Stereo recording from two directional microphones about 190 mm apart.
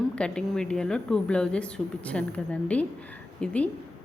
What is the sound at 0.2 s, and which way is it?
A woman's voice, 5° left (ahead or behind).